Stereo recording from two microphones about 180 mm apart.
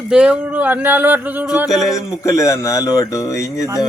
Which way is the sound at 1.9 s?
15° left (ahead or behind).